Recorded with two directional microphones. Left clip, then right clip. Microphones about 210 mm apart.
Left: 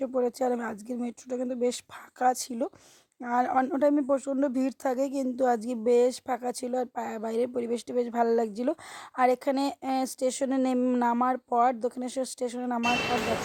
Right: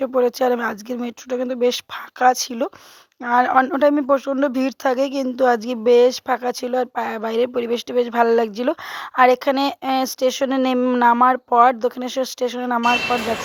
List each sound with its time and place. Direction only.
0.0 s speech: 20° right (ahead or behind)